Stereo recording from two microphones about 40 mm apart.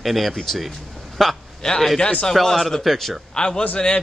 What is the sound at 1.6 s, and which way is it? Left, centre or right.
A man's voice, centre.